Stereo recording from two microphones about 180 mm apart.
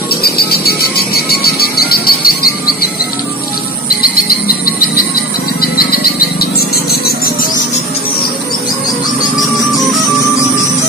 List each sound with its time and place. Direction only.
0.1 s music: 60° left (ahead or behind)
3.8 s music: 55° left (ahead or behind)